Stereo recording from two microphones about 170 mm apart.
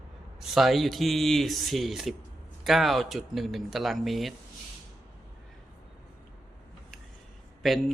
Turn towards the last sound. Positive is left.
turn(degrees=0)  # may be behind; listen again after turning